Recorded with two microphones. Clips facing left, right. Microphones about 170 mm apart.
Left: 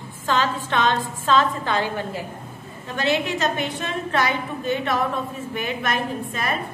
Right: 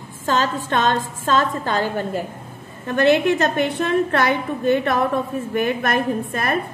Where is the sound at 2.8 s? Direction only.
55° right (ahead or behind).